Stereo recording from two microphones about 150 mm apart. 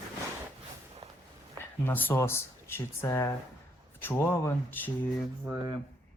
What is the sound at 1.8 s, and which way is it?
Speech, 10° left (ahead or behind).